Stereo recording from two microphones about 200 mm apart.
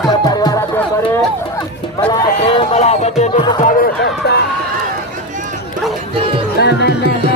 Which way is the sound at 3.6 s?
40° left (ahead or behind).